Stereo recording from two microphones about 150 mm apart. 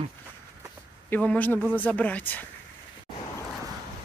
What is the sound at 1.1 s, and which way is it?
Speech, 10° left (ahead or behind).